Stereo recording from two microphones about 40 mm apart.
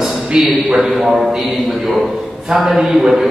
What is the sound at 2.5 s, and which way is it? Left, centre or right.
Speech, centre.